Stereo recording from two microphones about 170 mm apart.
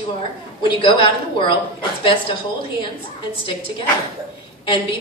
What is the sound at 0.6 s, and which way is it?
Speech, 30° left (ahead or behind).